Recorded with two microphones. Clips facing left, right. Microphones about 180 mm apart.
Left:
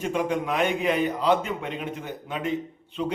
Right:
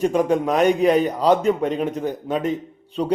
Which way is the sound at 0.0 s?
40° right (ahead or behind).